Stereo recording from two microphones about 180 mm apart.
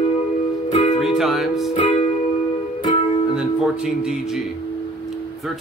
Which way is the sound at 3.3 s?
5° right (ahead or behind).